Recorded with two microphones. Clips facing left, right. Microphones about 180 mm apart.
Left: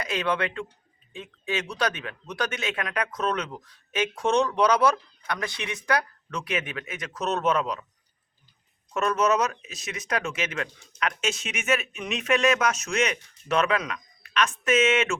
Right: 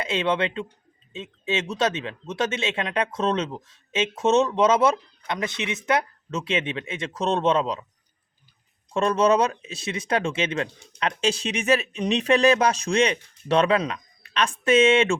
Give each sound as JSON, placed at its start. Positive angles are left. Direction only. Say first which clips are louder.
{"t": 0.0, "sound": "speech", "louder": "right 3 dB", "side_deg": -25}
{"t": 8.9, "sound": "speech", "louder": "right 4 dB", "side_deg": -30}